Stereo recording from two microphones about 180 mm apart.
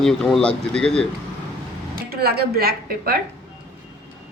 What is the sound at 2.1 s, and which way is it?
A woman's voice, 60° right (ahead or behind).